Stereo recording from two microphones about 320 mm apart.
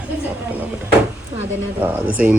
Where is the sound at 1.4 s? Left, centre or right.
Centre.